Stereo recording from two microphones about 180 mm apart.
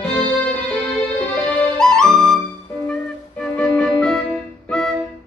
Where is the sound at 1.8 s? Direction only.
5° left (ahead or behind).